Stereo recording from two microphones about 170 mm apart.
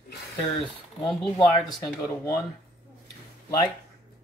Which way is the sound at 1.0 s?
Centre (ahead or behind).